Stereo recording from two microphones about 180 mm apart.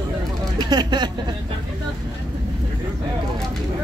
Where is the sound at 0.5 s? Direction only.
25° right (ahead or behind).